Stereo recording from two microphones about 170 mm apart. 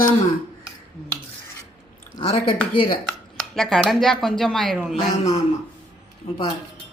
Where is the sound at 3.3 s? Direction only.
Centre (ahead or behind).